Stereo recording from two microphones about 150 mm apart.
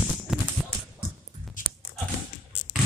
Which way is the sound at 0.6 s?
5° right (ahead or behind).